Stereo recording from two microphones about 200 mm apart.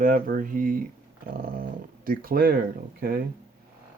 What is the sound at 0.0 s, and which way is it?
Speech, 45° right (ahead or behind).